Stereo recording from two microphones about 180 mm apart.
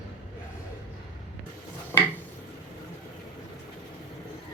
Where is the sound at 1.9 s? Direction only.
15° left (ahead or behind).